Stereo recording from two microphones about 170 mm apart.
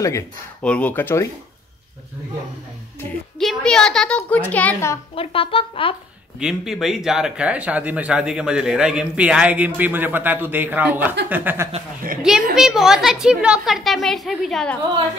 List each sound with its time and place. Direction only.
0.6 s speech: 10° left (ahead or behind)
3.3 s speech: 5° left (ahead or behind)
5.1 s speech: 35° left (ahead or behind)
6.4 s a man's voice: centre (ahead or behind)